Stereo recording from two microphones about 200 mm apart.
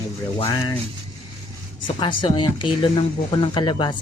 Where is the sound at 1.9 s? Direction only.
20° left (ahead or behind).